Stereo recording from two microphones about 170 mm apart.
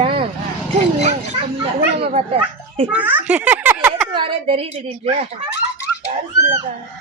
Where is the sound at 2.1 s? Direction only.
35° right (ahead or behind).